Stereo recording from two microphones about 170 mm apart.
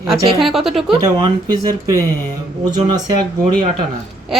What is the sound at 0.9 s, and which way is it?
Speech, 30° right (ahead or behind).